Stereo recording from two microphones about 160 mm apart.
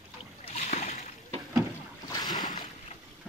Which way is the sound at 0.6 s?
45° left (ahead or behind).